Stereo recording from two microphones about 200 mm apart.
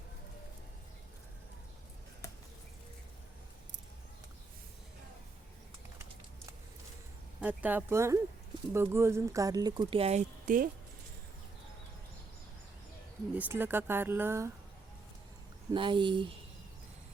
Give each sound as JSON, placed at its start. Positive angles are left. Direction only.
{"t": 7.4, "sound": "speech", "side_deg": -10}
{"t": 13.3, "sound": "speech", "side_deg": -10}
{"t": 15.7, "sound": "speech", "side_deg": -25}